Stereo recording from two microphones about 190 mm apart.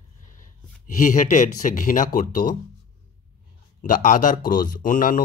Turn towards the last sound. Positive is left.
turn(degrees=45)  # may be behind; listen again after turning